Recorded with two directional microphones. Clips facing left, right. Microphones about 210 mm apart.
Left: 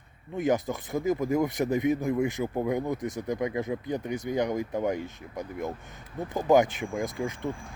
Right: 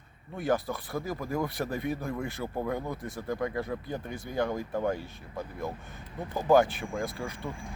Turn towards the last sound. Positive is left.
turn(degrees=20)  # may be behind; listen again after turning